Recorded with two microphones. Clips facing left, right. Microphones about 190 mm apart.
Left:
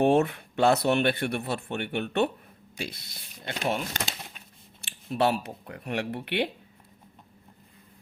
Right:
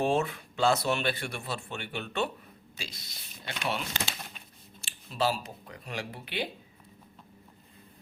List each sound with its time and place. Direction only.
0.0 s speech: 60° left (ahead or behind)
3.5 s speech: 45° left (ahead or behind)
4.8 s speech: 60° left (ahead or behind)